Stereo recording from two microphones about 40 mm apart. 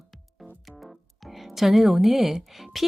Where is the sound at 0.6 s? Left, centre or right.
Centre.